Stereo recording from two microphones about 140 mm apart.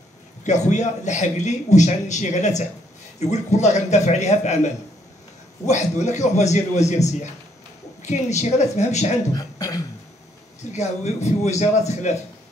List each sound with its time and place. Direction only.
0.4 s a man's voice: 55° left (ahead or behind)
5.7 s a man's voice: 55° left (ahead or behind)
9.3 s beatboxing: 25° left (ahead or behind)
10.7 s a man's voice: 55° left (ahead or behind)